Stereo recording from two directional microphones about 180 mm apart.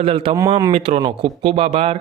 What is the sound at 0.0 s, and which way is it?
Speech, 30° right (ahead or behind).